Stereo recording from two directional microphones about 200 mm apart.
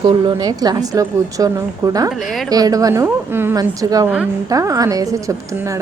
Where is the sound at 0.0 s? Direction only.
25° right (ahead or behind).